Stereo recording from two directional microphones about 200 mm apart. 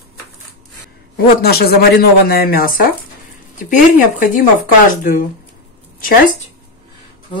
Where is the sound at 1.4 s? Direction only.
50° left (ahead or behind).